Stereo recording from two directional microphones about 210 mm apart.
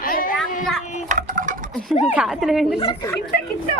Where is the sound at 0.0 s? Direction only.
40° left (ahead or behind).